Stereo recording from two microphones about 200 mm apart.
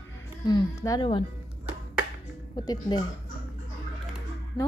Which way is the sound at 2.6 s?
20° left (ahead or behind).